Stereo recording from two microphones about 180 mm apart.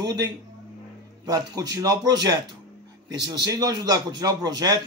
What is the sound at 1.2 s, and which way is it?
A man's voice, 20° right (ahead or behind).